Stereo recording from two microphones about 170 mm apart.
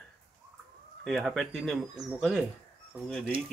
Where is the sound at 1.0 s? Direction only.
Centre (ahead or behind).